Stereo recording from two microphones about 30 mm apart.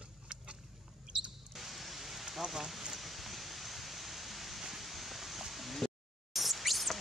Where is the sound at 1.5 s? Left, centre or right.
Centre.